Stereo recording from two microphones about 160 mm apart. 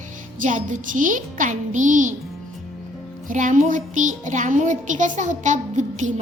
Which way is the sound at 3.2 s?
55° right (ahead or behind).